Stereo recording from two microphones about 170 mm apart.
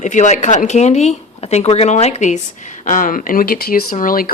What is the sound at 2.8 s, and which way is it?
Speech, 50° left (ahead or behind).